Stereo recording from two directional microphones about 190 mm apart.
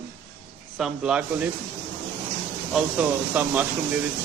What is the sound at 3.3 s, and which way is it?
Speech, 10° right (ahead or behind).